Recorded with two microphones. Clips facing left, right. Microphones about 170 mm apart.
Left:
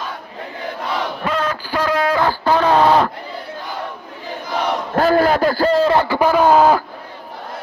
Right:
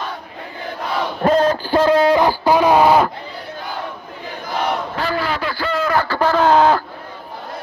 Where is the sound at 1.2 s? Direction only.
35° right (ahead or behind); by 3.0 s 10° right (ahead or behind).